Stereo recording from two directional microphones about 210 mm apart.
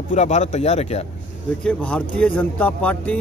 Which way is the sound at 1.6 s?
5° left (ahead or behind).